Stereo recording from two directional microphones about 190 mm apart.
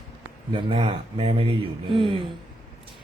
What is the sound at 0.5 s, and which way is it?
Speech, 30° right (ahead or behind).